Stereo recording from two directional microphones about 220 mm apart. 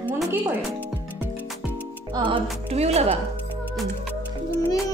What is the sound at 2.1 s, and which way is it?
Speech, 20° right (ahead or behind).